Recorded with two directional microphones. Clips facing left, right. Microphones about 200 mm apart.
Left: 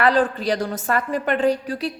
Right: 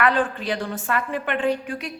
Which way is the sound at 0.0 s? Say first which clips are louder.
Left 3 dB; 35° left (ahead or behind).